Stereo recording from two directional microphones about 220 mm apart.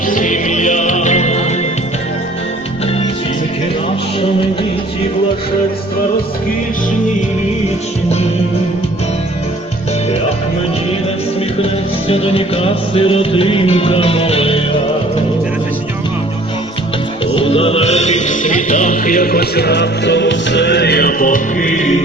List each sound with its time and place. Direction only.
0.1 s music: 35° left (ahead or behind)
11.6 s music: 25° left (ahead or behind)
17.2 s music: 25° left (ahead or behind)